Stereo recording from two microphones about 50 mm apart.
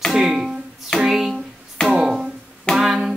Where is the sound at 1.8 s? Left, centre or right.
Centre.